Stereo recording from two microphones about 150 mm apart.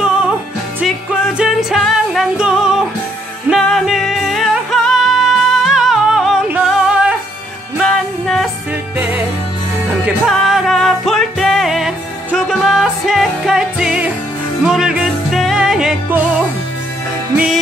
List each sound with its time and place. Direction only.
0.0 s music: 5° right (ahead or behind)
10.0 s music: centre (ahead or behind)